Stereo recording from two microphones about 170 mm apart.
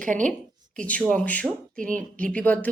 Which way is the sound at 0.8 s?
10° left (ahead or behind).